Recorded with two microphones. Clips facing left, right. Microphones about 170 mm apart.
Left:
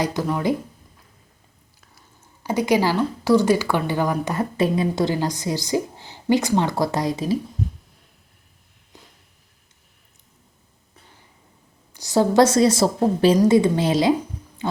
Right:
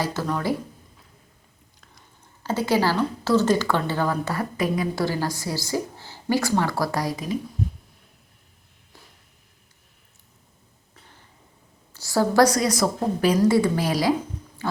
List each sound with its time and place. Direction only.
0.0 s speech: 15° left (ahead or behind)
1.8 s speech: 10° left (ahead or behind); by 7.3 s 25° left (ahead or behind)
11.9 s a woman's voice: 20° left (ahead or behind)
14.6 s pig: 20° left (ahead or behind)